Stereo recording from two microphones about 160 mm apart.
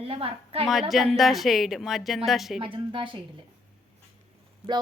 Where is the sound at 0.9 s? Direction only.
Centre (ahead or behind).